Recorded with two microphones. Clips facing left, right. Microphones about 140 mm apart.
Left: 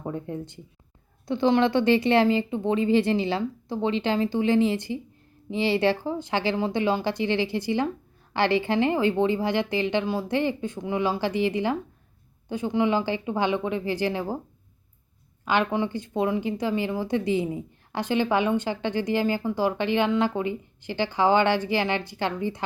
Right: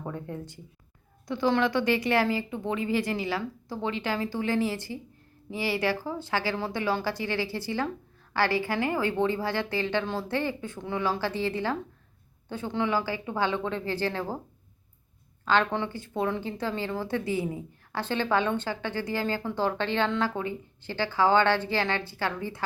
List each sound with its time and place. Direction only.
0.0 s speech: 20° left (ahead or behind)
15.4 s speech: 15° left (ahead or behind)